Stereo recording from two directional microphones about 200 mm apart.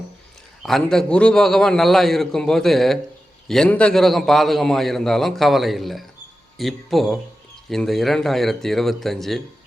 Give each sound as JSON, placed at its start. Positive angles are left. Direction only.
{"t": 0.6, "sound": "a man's voice", "side_deg": 0}